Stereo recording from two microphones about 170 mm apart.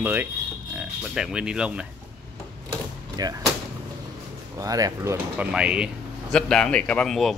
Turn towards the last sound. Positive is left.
turn(degrees=0)  # may be behind; listen again after turning